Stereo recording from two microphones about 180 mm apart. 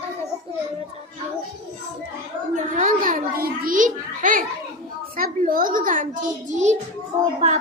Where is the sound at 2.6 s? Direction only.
45° right (ahead or behind).